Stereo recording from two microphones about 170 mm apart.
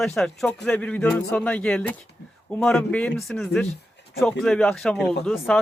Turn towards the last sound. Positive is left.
turn(degrees=5)  # may be behind; listen again after turning